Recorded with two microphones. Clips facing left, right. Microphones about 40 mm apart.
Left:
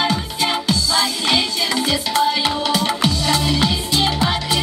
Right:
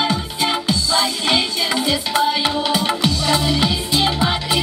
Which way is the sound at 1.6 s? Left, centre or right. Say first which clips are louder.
Even; centre.